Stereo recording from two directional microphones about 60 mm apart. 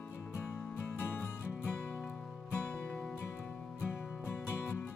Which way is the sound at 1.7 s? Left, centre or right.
Centre.